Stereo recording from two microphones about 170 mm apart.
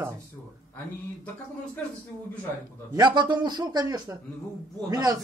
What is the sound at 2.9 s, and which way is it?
A man's voice, 25° right (ahead or behind).